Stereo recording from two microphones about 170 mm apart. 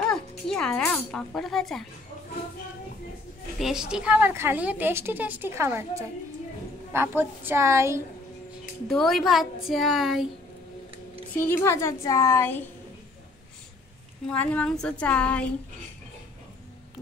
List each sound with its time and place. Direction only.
0.1 s a sound: 5° left (ahead or behind)
3.5 s a woman's voice: 5° right (ahead or behind)
8.8 s a woman's voice: centre (ahead or behind)
11.3 s a woman's voice: 15° left (ahead or behind)
14.2 s a woman's voice: 10° left (ahead or behind)